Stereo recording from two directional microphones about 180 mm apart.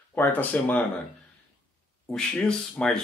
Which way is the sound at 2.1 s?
5° left (ahead or behind).